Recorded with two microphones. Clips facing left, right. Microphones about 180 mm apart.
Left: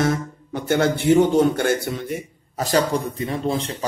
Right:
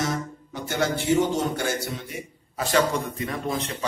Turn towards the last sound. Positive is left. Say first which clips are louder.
# left 4 dB
turn(degrees=30)  # may be behind; listen again after turning